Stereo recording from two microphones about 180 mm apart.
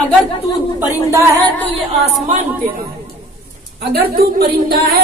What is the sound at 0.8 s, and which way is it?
Speech, 15° right (ahead or behind).